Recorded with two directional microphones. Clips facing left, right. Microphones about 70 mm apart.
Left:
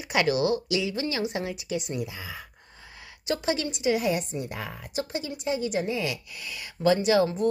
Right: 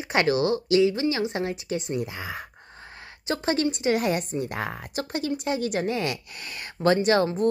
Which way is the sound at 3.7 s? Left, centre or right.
Right.